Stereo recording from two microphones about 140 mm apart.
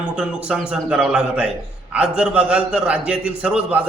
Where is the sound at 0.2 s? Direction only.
5° right (ahead or behind).